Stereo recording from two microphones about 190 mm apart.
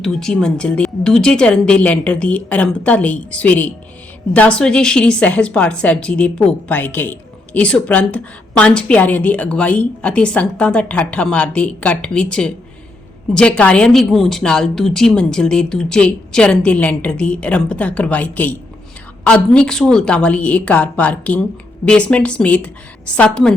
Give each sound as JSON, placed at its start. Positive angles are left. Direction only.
{"t": 0.0, "sound": "a woman's voice", "side_deg": 0}